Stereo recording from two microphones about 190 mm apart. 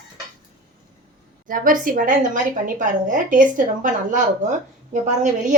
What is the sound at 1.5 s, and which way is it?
A woman's voice, 45° right (ahead or behind).